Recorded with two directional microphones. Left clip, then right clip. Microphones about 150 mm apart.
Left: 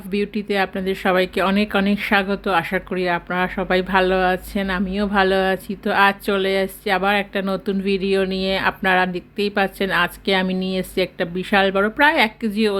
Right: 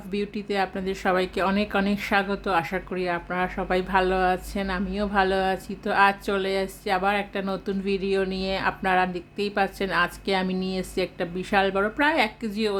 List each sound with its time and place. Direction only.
0.1 s speech: 15° left (ahead or behind)